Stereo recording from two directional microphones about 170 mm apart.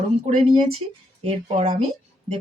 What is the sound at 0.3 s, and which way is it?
Speech, 35° right (ahead or behind).